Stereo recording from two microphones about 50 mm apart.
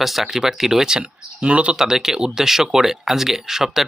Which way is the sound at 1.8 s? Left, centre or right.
Centre.